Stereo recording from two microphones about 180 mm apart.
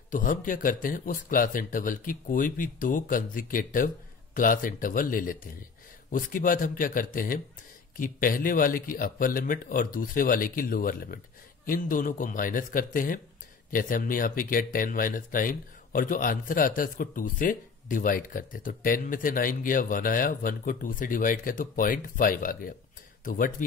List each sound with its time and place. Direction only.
0.1 s speech: 45° left (ahead or behind)